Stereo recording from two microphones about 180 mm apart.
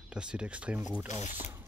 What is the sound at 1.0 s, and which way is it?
Speech, 40° left (ahead or behind).